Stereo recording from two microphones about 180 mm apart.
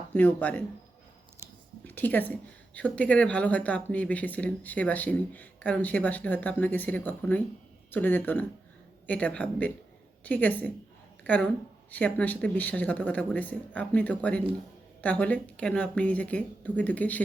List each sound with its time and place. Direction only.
0.1 s a woman's voice: 10° left (ahead or behind)
1.8 s a woman's voice: 10° left (ahead or behind)